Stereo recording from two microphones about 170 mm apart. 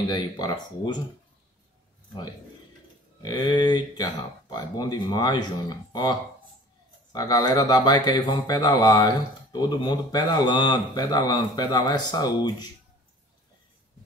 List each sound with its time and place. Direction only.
0.1 s speech: 25° left (ahead or behind)
3.2 s speech: 25° left (ahead or behind)